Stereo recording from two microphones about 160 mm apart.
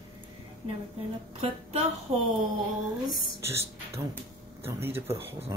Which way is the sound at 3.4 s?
15° right (ahead or behind).